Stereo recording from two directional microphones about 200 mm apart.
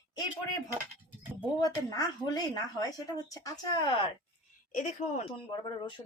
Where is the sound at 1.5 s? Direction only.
20° left (ahead or behind).